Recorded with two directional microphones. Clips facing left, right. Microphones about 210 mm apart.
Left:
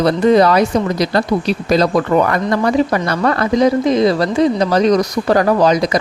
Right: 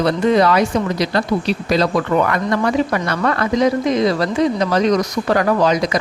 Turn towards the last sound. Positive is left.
turn(degrees=35)  # may be behind; listen again after turning